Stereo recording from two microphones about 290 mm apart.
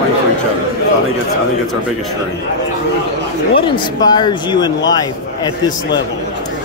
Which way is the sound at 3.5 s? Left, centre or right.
Centre.